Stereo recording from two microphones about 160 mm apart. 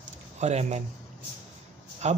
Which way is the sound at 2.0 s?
45° right (ahead or behind).